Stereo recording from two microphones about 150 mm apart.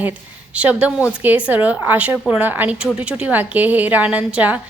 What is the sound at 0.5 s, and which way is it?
A woman's voice, 10° right (ahead or behind).